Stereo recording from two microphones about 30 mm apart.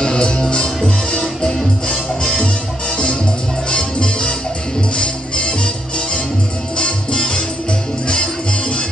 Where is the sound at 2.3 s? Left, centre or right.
Left.